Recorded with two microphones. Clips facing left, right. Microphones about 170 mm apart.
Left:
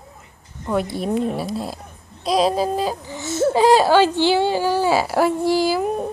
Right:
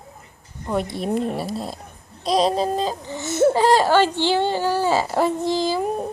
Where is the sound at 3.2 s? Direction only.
20° right (ahead or behind).